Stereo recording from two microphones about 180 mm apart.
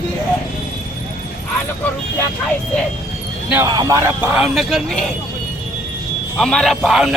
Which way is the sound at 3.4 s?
10° right (ahead or behind).